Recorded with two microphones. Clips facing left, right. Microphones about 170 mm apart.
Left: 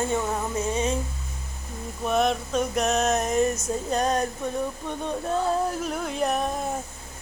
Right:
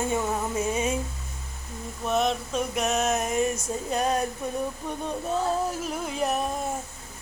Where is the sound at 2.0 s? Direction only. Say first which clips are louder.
Left 2 dB; centre (ahead or behind).